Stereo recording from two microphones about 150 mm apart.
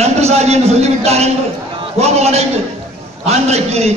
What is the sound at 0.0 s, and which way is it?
A man's voice, 45° right (ahead or behind).